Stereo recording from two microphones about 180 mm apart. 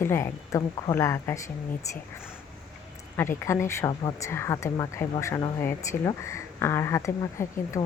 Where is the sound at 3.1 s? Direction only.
15° left (ahead or behind).